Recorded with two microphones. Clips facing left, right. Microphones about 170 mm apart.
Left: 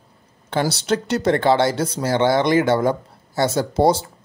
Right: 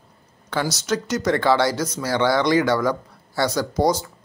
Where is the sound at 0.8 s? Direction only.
30° left (ahead or behind).